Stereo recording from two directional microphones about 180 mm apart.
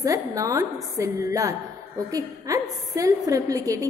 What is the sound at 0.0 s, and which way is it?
A woman's voice, 20° right (ahead or behind).